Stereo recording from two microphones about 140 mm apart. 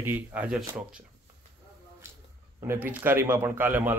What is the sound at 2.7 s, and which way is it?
A man's voice, 15° right (ahead or behind).